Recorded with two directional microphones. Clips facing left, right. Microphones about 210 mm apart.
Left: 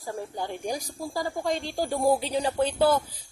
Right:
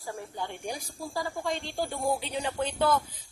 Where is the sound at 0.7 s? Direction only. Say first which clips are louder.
Left 4 dB; 40° left (ahead or behind).